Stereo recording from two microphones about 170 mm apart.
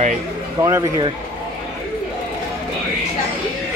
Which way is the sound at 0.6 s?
15° right (ahead or behind).